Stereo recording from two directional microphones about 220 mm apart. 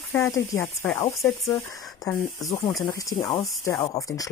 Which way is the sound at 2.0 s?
15° left (ahead or behind).